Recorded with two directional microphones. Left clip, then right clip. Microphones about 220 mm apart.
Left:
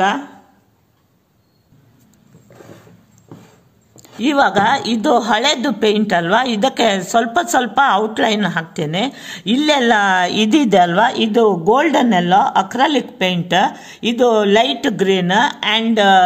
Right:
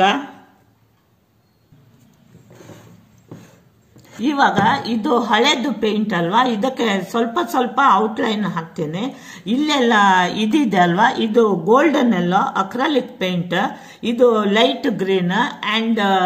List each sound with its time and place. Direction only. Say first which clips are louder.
3.9 s a woman's voice: left 5 dB; 50° left (ahead or behind)